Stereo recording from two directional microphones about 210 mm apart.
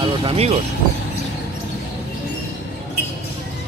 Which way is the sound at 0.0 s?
25° right (ahead or behind).